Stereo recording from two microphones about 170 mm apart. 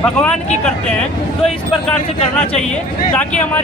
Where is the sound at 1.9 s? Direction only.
5° left (ahead or behind).